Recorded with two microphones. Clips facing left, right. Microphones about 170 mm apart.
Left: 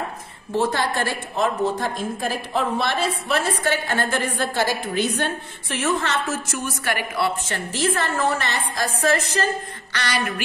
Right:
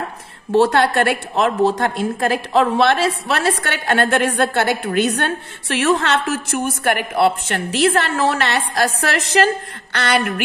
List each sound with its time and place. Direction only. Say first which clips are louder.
0.5 s a woman's voice: right 8 dB; 70° right (ahead or behind); by 9.5 s 90° right
9.9 s a woman's voice: right 6 dB; 55° right (ahead or behind)